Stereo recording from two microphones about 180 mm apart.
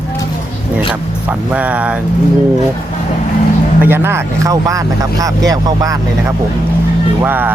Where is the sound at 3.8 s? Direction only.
10° right (ahead or behind).